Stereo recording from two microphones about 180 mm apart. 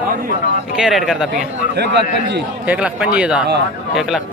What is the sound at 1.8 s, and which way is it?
Speech, 65° right (ahead or behind).